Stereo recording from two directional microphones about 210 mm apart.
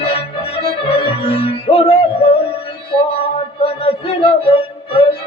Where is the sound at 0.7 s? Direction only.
25° left (ahead or behind).